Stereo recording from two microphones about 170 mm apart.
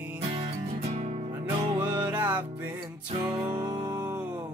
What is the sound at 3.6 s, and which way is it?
Music, 25° right (ahead or behind).